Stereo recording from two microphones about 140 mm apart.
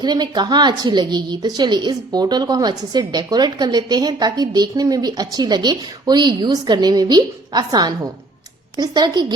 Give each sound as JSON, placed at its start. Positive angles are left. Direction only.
{"t": 0.0, "sound": "a woman's voice", "side_deg": -30}